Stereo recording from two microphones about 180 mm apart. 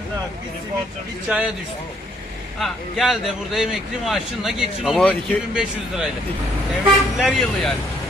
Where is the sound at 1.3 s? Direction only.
10° right (ahead or behind).